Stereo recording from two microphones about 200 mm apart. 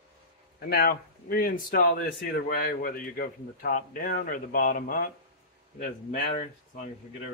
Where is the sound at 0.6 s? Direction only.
50° left (ahead or behind).